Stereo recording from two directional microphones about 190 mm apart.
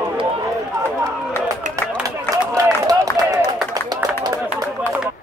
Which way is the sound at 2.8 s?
20° right (ahead or behind).